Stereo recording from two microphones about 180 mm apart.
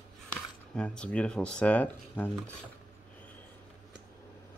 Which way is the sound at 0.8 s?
5° left (ahead or behind).